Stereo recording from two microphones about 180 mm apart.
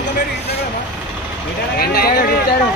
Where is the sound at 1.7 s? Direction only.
55° left (ahead or behind).